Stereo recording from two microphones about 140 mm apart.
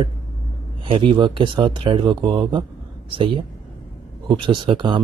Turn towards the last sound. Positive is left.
turn(degrees=-35)  # may be behind; listen again after turning